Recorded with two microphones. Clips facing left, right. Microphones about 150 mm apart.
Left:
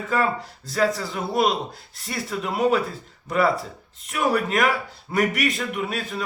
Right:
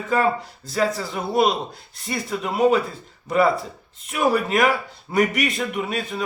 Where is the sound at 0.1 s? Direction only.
Centre (ahead or behind).